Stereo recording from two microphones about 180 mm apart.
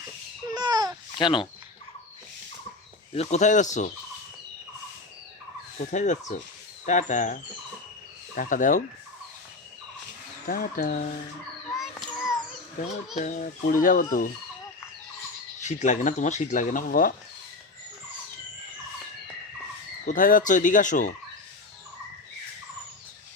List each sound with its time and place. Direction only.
0.5 s babbling: 20° right (ahead or behind)
1.2 s speech: 25° left (ahead or behind)
3.1 s speech: 40° left (ahead or behind)
5.8 s speech: 40° left (ahead or behind)
8.4 s speech: 50° left (ahead or behind)
10.4 s speech: 55° left (ahead or behind)
11.8 s a sound: centre (ahead or behind)
13.1 s speech: 45° left (ahead or behind)
15.6 s speech: 40° left (ahead or behind)
20.1 s speech: 50° left (ahead or behind)